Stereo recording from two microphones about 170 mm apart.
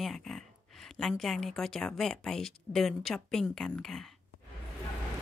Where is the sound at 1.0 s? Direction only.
Centre (ahead or behind).